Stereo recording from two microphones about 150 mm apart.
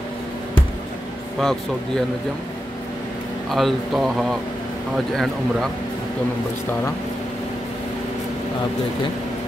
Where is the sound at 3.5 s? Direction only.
Centre (ahead or behind).